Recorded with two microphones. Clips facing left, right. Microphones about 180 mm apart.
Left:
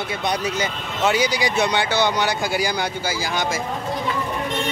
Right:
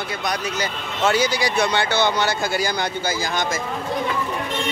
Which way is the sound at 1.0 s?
15° left (ahead or behind).